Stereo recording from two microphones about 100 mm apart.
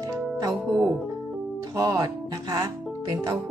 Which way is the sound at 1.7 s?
35° right (ahead or behind).